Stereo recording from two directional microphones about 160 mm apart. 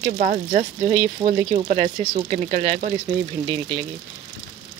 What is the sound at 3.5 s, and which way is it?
Speech, 35° right (ahead or behind).